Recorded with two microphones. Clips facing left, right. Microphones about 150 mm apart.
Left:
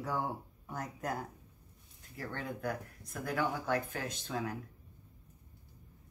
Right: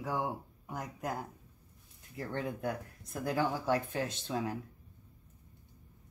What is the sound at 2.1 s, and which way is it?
Speech, 20° right (ahead or behind).